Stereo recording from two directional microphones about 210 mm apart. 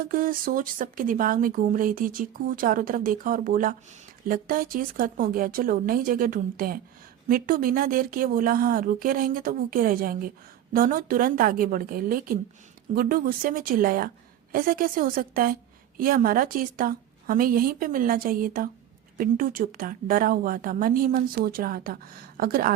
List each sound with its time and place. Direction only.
0.0 s speech: 40° right (ahead or behind)